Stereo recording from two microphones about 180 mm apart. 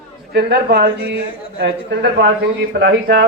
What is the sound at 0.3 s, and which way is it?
Speech, 65° right (ahead or behind).